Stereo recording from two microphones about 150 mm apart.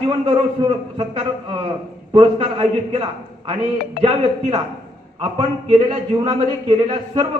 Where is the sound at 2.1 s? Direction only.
40° right (ahead or behind).